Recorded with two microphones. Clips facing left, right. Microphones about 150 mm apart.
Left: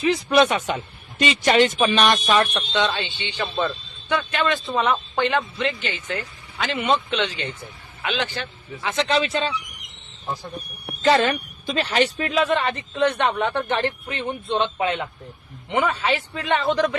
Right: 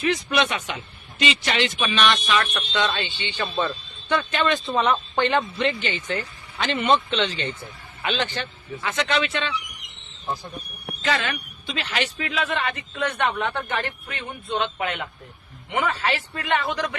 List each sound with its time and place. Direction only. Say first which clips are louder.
0.0 s speech: left 5 dB; 35° left (ahead or behind)
2.7 s a man's voice: left 2 dB; 20° left (ahead or behind)
4.1 s speech: even; 5° left (ahead or behind)
8.8 s a man's voice: left 2 dB; 20° left (ahead or behind)
9.0 s speech: left 4 dB; 35° left (ahead or behind)
11.0 s a man's voice: left 8 dB; 35° left (ahead or behind)